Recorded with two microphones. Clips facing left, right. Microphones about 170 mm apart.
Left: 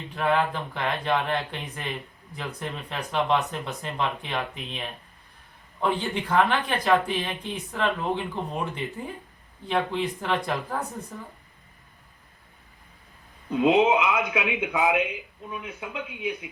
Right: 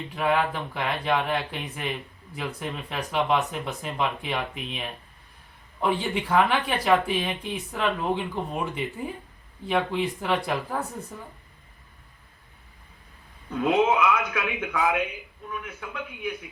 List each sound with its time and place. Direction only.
0.2 s speech: centre (ahead or behind)
13.5 s speech: 20° left (ahead or behind)